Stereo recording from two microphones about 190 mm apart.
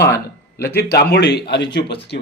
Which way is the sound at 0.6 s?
55° left (ahead or behind).